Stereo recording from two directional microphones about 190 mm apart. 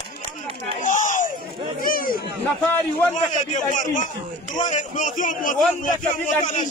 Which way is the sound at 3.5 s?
40° left (ahead or behind).